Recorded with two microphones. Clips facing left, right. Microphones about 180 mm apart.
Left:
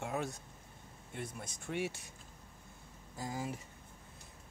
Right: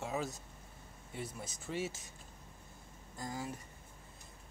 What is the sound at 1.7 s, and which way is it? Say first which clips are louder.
Speech: left 1 dB; 65° left (ahead or behind).